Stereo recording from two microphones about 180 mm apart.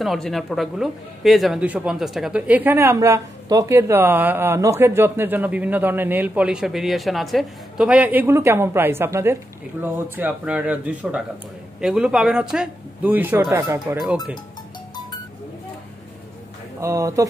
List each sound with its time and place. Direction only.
0.0 s speech: centre (ahead or behind); by 14.1 s 15° right (ahead or behind)
16.8 s speech: 15° right (ahead or behind)